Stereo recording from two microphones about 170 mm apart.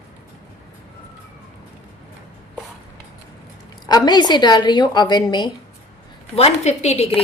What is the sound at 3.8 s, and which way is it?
A woman's voice, 25° left (ahead or behind).